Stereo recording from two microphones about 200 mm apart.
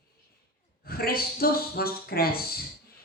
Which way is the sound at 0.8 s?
50° left (ahead or behind).